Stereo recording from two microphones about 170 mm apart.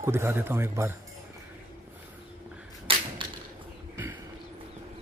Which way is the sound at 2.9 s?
30° right (ahead or behind).